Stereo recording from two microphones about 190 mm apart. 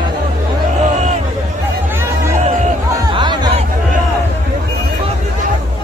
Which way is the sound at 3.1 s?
25° right (ahead or behind).